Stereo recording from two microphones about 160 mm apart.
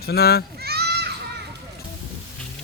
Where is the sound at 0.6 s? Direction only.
85° right.